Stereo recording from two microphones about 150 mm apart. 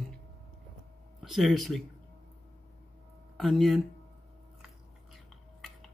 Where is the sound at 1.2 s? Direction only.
Centre (ahead or behind).